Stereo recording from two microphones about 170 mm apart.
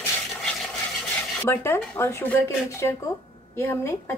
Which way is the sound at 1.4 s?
15° left (ahead or behind).